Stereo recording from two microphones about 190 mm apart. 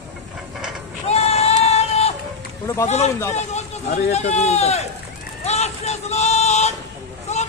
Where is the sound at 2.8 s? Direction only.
35° left (ahead or behind).